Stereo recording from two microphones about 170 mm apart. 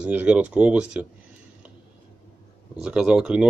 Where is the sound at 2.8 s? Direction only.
5° right (ahead or behind).